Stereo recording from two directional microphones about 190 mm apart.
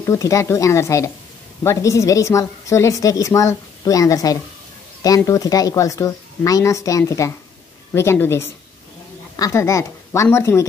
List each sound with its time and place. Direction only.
0.0 s a woman's voice: 15° left (ahead or behind)